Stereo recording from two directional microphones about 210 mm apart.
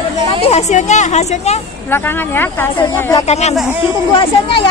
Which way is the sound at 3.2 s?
30° left (ahead or behind).